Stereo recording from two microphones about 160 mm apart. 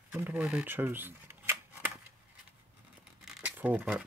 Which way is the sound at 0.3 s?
5° right (ahead or behind).